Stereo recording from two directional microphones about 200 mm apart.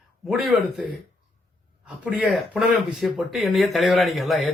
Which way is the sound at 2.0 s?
5° right (ahead or behind).